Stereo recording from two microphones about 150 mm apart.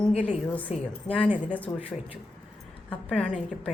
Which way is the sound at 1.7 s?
25° left (ahead or behind).